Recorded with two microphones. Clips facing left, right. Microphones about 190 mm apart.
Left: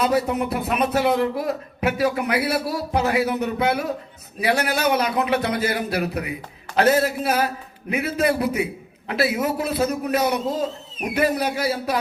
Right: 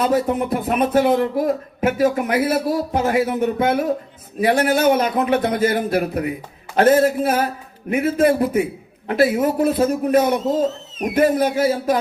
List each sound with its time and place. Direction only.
0.0 s a man's voice: 50° right (ahead or behind)